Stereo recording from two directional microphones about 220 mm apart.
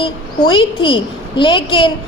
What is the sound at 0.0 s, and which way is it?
A woman's voice, 20° left (ahead or behind).